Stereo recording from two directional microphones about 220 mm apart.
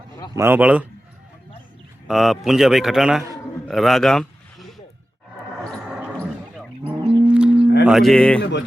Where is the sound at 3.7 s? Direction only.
Centre (ahead or behind).